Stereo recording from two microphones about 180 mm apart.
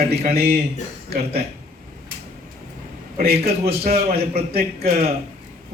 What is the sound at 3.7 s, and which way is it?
Speech, 35° right (ahead or behind).